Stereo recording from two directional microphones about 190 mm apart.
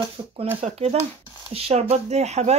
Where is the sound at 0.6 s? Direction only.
30° right (ahead or behind).